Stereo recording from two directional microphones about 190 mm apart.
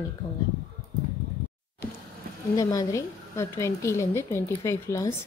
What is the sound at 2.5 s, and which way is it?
Speech, 15° left (ahead or behind).